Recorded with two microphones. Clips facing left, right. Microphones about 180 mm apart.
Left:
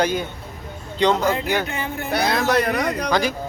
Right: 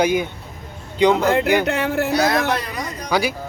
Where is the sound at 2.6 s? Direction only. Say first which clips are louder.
Left 7 dB; 65° left (ahead or behind).